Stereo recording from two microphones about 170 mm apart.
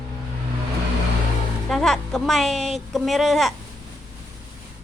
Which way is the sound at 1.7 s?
Centre (ahead or behind).